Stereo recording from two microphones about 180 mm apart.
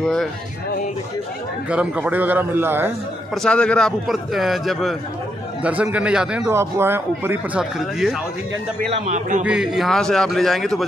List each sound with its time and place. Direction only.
0.0 s a man's voice: 5° left (ahead or behind)
1.7 s speech: 5° right (ahead or behind)
3.4 s a man's voice: 5° left (ahead or behind)
8.9 s speech: 40° right (ahead or behind)
9.4 s a man's voice: 5° right (ahead or behind)